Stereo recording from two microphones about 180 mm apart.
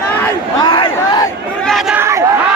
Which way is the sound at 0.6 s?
25° left (ahead or behind).